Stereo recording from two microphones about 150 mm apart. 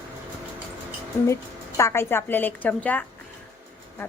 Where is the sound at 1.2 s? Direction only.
20° left (ahead or behind).